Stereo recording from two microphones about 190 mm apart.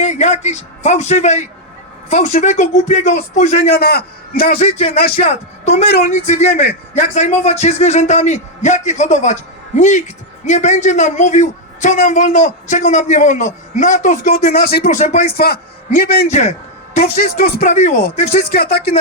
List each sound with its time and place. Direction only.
0.0 s a man's voice: 35° left (ahead or behind)
3.7 s a man's voice: 55° left (ahead or behind)
4.6 s a man's voice: 30° left (ahead or behind)
4.9 s a man's voice: 50° left (ahead or behind)
5.2 s a man's voice: 35° left (ahead or behind)
5.8 s speech: 55° left (ahead or behind)
6.1 s a man's voice: 35° left (ahead or behind); by 14.9 s 55° left (ahead or behind)
14.9 s a man's voice: 35° left (ahead or behind)
15.4 s a man's voice: 55° left (ahead or behind)
16.3 s a sound: 35° left (ahead or behind)
17.2 s a man's voice: 45° left (ahead or behind)
18.4 s a man's voice: 55° left (ahead or behind)